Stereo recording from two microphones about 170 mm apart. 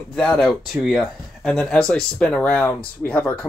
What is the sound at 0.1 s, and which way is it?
Speech, 5° left (ahead or behind).